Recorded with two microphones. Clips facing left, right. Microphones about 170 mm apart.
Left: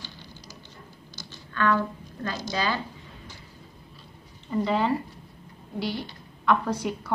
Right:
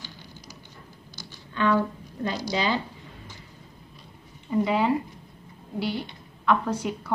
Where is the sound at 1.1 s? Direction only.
15° right (ahead or behind).